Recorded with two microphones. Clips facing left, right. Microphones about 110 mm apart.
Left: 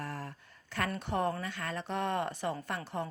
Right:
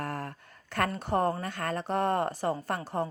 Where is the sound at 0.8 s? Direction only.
40° right (ahead or behind).